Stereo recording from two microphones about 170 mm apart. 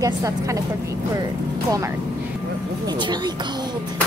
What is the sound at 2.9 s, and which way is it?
Speech, 25° right (ahead or behind).